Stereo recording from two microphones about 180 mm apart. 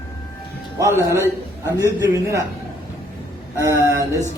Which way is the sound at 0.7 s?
15° right (ahead or behind).